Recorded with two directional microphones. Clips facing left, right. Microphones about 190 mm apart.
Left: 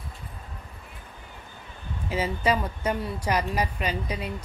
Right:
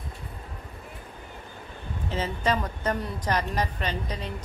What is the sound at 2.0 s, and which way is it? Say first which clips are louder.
A woman's voice: left 2 dB; 10° left (ahead or behind).